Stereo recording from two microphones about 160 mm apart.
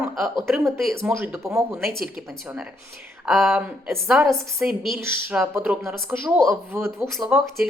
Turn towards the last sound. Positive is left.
turn(degrees=0)  # may be behind; listen again after turning